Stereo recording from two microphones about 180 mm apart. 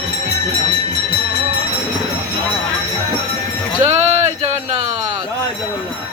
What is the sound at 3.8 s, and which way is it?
Music, 40° right (ahead or behind).